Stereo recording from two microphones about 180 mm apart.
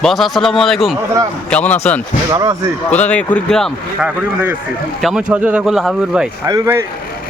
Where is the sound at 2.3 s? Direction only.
20° right (ahead or behind).